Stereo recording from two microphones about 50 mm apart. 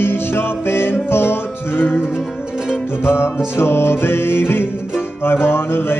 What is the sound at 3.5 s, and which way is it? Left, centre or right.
Mantra, left.